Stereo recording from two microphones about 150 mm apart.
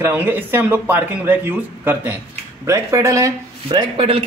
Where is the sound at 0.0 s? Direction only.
15° right (ahead or behind).